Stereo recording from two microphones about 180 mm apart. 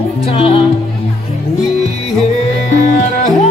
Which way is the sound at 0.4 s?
30° left (ahead or behind).